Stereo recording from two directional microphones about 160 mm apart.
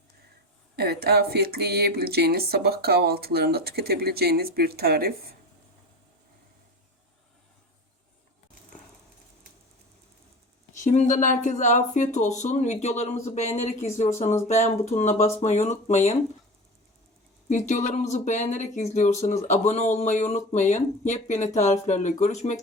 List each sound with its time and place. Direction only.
0.8 s speech: 85° right
10.8 s speech: 50° left (ahead or behind)
17.5 s speech: 50° left (ahead or behind)